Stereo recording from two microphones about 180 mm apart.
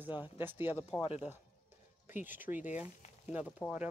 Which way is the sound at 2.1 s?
10° right (ahead or behind).